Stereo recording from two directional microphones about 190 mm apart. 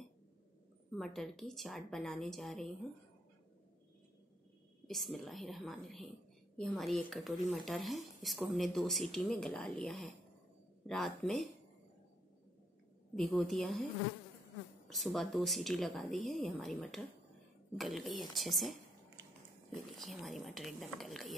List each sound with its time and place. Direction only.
0.9 s a woman's voice: centre (ahead or behind)
4.8 s a woman's voice: centre (ahead or behind)
13.1 s a woman's voice: centre (ahead or behind)
14.9 s a woman's voice: centre (ahead or behind)